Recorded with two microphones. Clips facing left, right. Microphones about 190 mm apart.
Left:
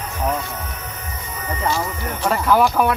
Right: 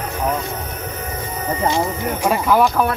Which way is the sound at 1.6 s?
20° right (ahead or behind).